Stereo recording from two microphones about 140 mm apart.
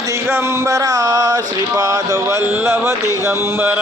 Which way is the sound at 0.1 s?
20° right (ahead or behind).